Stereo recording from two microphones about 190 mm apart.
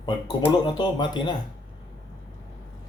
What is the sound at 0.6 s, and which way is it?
Speech, 25° left (ahead or behind).